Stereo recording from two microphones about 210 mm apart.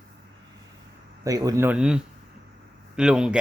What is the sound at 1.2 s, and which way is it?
Speech, 15° right (ahead or behind).